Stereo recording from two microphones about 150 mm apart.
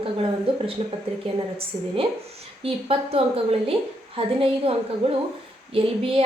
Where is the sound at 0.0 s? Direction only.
35° right (ahead or behind).